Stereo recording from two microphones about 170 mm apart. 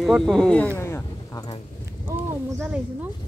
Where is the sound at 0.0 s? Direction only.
Centre (ahead or behind).